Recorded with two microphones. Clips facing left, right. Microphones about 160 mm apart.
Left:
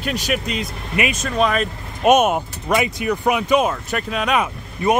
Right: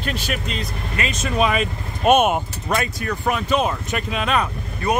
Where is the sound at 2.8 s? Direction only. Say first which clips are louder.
Left 4 dB; 15° left (ahead or behind).